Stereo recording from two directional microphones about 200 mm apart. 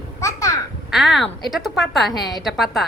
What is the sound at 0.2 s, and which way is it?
Babbling, 15° left (ahead or behind).